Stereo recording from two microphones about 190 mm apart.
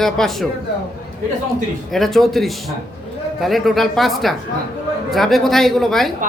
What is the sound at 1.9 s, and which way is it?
A woman's voice, centre (ahead or behind).